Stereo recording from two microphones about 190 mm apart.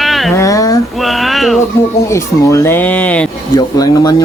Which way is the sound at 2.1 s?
15° left (ahead or behind).